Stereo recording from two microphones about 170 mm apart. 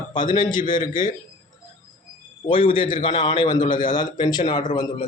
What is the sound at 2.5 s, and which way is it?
Speech, 30° left (ahead or behind).